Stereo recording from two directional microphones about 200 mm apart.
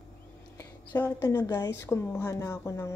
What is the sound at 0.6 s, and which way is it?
A woman's voice, 10° left (ahead or behind).